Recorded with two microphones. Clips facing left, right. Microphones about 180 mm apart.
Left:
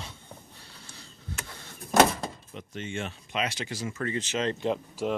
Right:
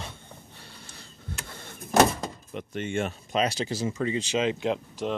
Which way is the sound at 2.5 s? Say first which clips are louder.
Right 7 dB; 55° right (ahead or behind).